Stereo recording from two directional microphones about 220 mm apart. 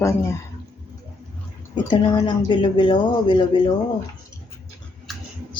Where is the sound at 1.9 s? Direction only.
20° left (ahead or behind).